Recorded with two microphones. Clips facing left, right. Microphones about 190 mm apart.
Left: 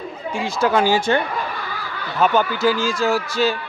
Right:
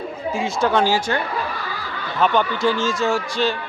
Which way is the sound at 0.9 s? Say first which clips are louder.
Left 3 dB; 25° left (ahead or behind).